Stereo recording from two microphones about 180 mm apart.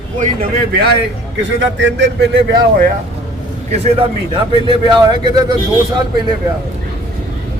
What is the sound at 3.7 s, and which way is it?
A man's voice, 35° right (ahead or behind).